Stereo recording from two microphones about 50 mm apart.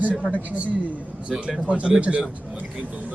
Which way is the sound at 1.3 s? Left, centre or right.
Right.